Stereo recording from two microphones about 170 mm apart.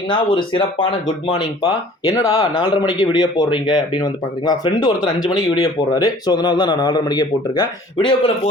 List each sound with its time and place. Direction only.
0.1 s speech: 30° left (ahead or behind)